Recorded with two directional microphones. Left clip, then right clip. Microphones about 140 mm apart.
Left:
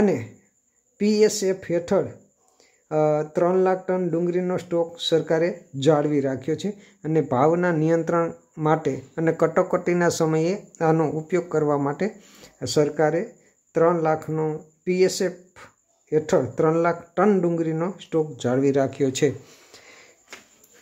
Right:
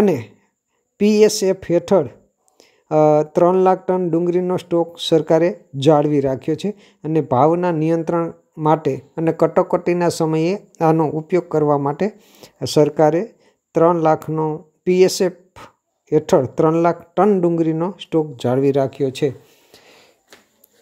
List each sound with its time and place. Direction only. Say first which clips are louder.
0.0 s speech: right 5 dB; 45° right (ahead or behind); by 19.3 s 20° right (ahead or behind)
19.7 s wheeze: right 3 dB; 30° right (ahead or behind)